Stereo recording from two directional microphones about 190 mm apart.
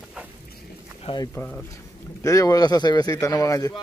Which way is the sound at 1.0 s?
25° left (ahead or behind).